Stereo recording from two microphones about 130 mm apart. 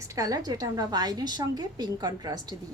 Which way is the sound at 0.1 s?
25° right (ahead or behind).